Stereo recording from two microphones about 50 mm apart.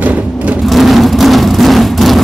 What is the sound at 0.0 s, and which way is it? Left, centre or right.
Vehicle, right.